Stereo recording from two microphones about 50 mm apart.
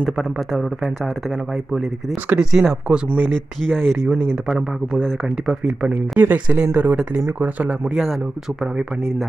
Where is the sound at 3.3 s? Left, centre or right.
Centre.